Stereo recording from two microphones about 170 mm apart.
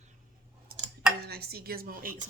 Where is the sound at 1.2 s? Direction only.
65° right (ahead or behind).